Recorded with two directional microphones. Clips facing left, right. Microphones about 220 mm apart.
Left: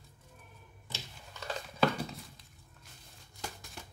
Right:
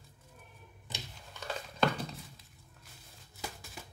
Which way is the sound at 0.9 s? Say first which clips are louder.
Right 1 dB; 15° right (ahead or behind).